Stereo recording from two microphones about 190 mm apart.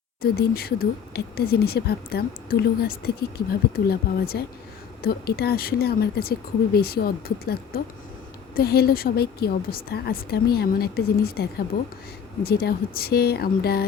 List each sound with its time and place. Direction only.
0.2 s a woman's voice: 55° left (ahead or behind)